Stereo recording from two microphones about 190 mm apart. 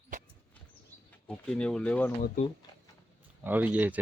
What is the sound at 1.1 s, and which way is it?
Speech, 5° left (ahead or behind).